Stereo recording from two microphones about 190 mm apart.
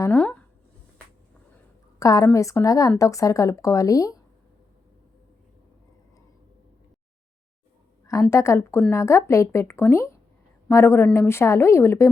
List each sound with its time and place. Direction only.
0.0 s a sound: 5° left (ahead or behind)
2.0 s a woman's voice: 20° left (ahead or behind)
8.0 s a woman's voice: 15° left (ahead or behind)